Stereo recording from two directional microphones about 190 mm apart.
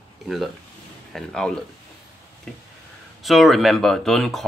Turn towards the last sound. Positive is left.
turn(degrees=0)  # may be behind; listen again after turning